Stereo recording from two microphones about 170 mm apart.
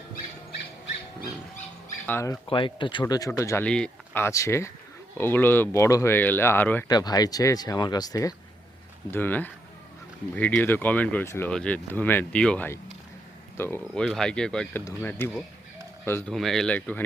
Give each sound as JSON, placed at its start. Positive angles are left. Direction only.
{"t": 2.0, "sound": "speech", "side_deg": 15}
{"t": 2.5, "sound": "speech", "side_deg": 30}
{"t": 3.7, "sound": "speech", "side_deg": 5}
{"t": 6.8, "sound": "speech", "side_deg": 25}
{"t": 16.3, "sound": "speech", "side_deg": 0}